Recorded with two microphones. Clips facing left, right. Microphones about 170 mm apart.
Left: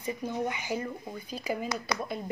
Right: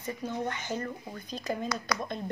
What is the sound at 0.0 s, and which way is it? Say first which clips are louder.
Speech: left 2 dB; 10° left (ahead or behind).